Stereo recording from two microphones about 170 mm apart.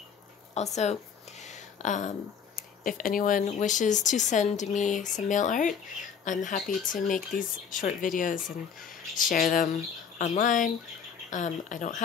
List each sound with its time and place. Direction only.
0.6 s speech: 40° left (ahead or behind)